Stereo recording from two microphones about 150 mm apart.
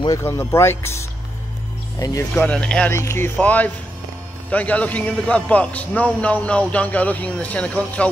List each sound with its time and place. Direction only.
0.0 s a man's voice: 20° left (ahead or behind)
2.3 s a man's voice: 10° left (ahead or behind)